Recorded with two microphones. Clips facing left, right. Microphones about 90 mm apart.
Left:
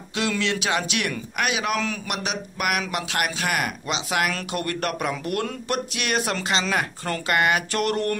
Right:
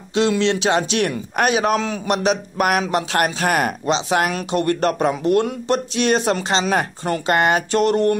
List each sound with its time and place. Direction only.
0.1 s a man's voice: 30° right (ahead or behind)